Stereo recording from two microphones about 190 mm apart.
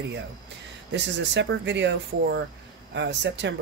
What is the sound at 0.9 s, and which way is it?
Speech, 70° right (ahead or behind).